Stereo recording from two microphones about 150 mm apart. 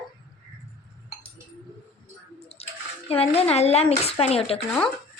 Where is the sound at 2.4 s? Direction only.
45° left (ahead or behind).